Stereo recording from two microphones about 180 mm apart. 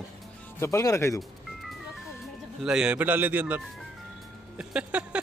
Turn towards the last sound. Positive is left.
turn(degrees=-5)  # may be behind; listen again after turning